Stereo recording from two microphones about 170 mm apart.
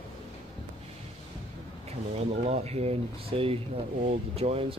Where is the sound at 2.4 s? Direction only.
40° right (ahead or behind).